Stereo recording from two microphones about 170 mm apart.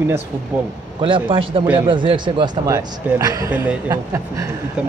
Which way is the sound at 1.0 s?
30° right (ahead or behind).